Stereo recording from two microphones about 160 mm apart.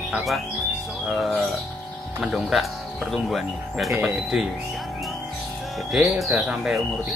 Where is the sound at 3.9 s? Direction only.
15° right (ahead or behind).